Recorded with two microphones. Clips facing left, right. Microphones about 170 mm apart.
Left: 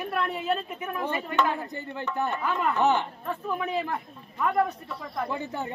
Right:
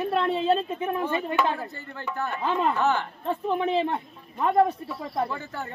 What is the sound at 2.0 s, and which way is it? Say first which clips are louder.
A woman's voice: left 1 dB; 15° left (ahead or behind).